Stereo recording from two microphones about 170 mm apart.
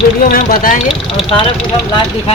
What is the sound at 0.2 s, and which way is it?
Speech, 60° left (ahead or behind).